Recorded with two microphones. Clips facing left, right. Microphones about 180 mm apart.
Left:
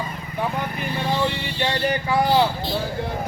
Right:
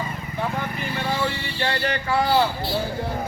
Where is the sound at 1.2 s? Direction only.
15° left (ahead or behind).